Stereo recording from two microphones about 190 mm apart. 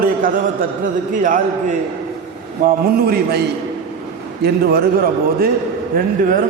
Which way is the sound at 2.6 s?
55° right (ahead or behind).